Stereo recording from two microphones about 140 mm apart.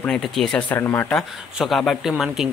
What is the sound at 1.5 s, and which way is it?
Speech, centre (ahead or behind).